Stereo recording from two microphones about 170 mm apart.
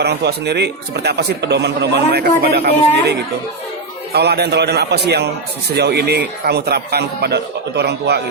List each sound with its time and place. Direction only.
0.0 s a man's voice: 75° right (ahead or behind)